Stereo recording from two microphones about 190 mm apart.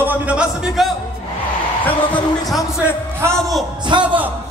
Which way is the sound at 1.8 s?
5° left (ahead or behind).